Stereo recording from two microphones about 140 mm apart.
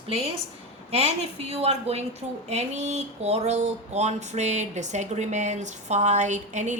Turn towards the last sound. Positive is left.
turn(degrees=-60)  # may be behind; listen again after turning